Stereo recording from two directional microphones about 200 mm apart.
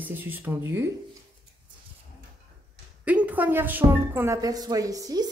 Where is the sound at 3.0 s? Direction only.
5° right (ahead or behind).